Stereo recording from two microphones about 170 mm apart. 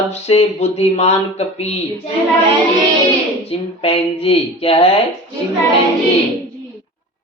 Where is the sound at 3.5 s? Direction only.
35° left (ahead or behind).